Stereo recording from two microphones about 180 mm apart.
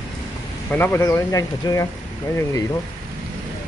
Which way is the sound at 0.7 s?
10° left (ahead or behind).